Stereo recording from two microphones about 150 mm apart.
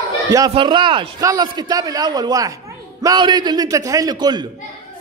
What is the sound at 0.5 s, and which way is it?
Speech, 30° right (ahead or behind).